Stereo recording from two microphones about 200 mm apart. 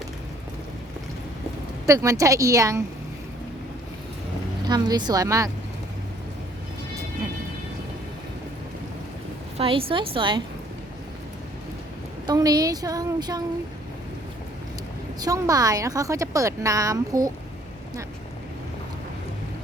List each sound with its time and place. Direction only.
1.9 s a woman's voice: 15° right (ahead or behind)
4.7 s a woman's voice: 20° right (ahead or behind)
9.6 s a woman's voice: 30° right (ahead or behind)
12.2 s a woman's voice: 20° right (ahead or behind)
15.2 s a woman's voice: 15° right (ahead or behind)